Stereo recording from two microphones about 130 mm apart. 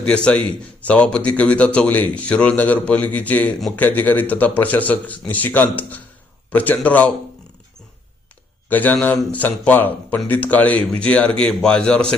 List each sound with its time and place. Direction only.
0.0 s a man's voice: 10° left (ahead or behind)
8.7 s a man's voice: 15° left (ahead or behind)